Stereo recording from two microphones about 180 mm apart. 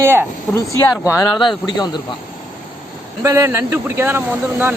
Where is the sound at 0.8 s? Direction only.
15° left (ahead or behind).